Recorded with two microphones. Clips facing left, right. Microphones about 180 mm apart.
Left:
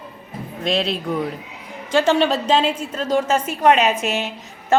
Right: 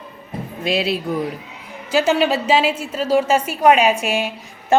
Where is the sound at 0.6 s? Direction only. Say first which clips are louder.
Right 1 dB; 5° right (ahead or behind).